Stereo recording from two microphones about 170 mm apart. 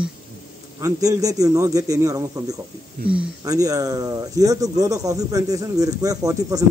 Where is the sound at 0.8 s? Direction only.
20° right (ahead or behind).